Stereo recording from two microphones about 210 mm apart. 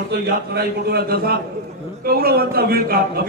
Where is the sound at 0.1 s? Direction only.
50° right (ahead or behind).